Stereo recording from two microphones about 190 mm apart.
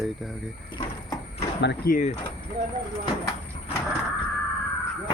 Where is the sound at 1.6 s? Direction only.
65° left (ahead or behind).